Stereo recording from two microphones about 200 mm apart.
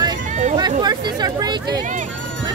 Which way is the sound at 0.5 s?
20° right (ahead or behind).